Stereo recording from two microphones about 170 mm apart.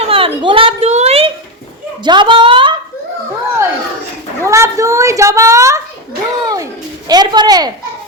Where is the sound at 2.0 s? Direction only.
25° right (ahead or behind).